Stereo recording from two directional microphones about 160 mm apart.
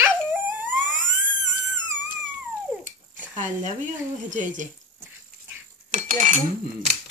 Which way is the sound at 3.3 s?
50° right (ahead or behind).